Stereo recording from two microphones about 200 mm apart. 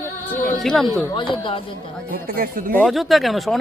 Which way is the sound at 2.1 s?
45° right (ahead or behind).